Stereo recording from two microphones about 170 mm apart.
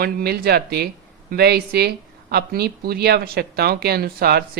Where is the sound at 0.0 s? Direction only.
65° right (ahead or behind).